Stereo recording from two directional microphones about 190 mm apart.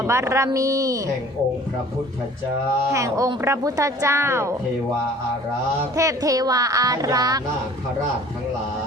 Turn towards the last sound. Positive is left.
turn(degrees=-20)  # may be behind; listen again after turning